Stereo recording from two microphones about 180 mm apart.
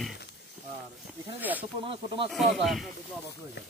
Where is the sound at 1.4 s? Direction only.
10° right (ahead or behind).